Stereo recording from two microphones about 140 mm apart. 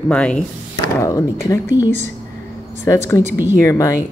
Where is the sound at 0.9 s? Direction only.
20° left (ahead or behind).